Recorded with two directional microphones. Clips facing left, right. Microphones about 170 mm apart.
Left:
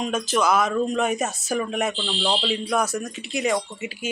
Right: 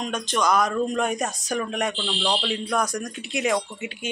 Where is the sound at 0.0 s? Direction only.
5° left (ahead or behind).